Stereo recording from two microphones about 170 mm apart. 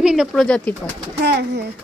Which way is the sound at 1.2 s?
75° right (ahead or behind).